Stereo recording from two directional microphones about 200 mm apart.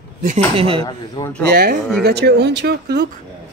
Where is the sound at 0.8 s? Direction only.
20° left (ahead or behind).